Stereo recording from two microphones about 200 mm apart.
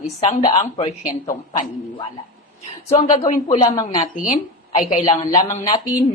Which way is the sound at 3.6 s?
20° left (ahead or behind).